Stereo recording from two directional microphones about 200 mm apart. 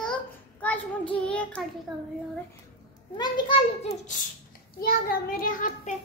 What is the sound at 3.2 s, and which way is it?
Speech, 20° left (ahead or behind).